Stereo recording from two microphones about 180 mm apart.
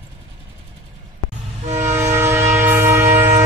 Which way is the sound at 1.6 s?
40° right (ahead or behind).